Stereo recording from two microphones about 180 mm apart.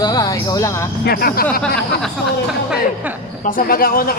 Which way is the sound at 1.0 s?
55° left (ahead or behind).